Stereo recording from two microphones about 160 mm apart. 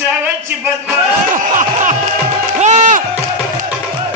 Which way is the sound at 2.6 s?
50° right (ahead or behind).